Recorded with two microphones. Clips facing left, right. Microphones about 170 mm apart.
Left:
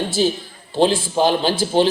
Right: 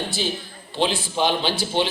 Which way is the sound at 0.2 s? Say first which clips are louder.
Left 8 dB; 40° left (ahead or behind).